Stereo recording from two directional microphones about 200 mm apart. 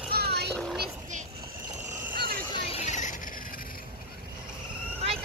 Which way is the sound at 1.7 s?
35° right (ahead or behind).